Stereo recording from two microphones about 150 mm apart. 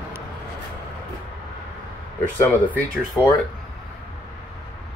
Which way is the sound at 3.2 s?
10° left (ahead or behind).